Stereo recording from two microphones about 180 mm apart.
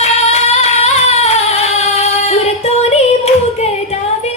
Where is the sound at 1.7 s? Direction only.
35° left (ahead or behind).